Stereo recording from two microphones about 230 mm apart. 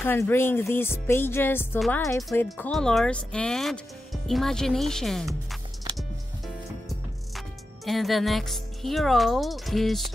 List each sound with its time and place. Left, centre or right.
0.0 s speech: centre
5.5 s music: centre
7.3 s speech: centre